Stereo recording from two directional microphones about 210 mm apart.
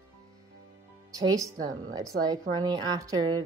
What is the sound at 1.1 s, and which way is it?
A woman's voice, 15° right (ahead or behind).